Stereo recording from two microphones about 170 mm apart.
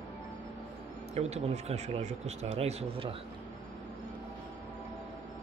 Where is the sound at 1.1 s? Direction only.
40° right (ahead or behind).